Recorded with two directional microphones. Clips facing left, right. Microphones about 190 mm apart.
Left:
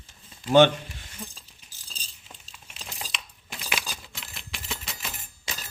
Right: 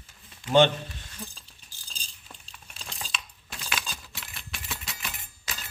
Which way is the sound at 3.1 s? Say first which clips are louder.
Right 1 dB; 20° left (ahead or behind).